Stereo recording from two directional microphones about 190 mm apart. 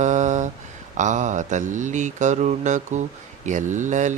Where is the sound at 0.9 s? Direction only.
40° right (ahead or behind).